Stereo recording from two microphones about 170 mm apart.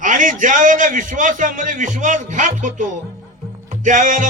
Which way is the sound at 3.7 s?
50° right (ahead or behind).